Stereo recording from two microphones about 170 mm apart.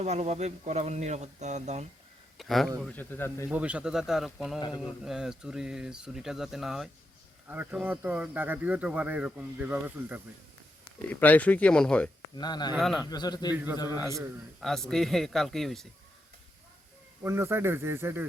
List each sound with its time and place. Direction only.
0.0 s speech: 40° right (ahead or behind)
2.4 s speech: centre (ahead or behind)
2.8 s speech: 10° left (ahead or behind)
3.5 s speech: 5° right (ahead or behind)
11.1 s speech: 10° left (ahead or behind)
12.4 s a man's voice: 25° left (ahead or behind)
13.5 s speech: 15° right (ahead or behind)
14.6 s speech: centre (ahead or behind)
17.2 s speech: 15° right (ahead or behind)